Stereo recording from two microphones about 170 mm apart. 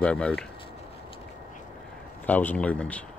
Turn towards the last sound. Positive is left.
turn(degrees=10)  # may be behind; listen again after turning